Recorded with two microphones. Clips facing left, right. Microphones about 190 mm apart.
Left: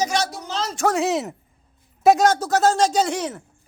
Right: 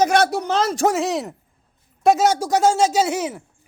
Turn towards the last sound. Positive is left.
turn(degrees=-10)  # may be behind; listen again after turning